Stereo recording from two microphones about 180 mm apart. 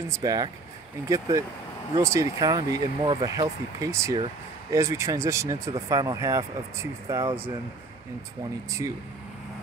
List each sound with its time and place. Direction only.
0.2 s speech: 20° right (ahead or behind)
8.6 s speech: 15° right (ahead or behind)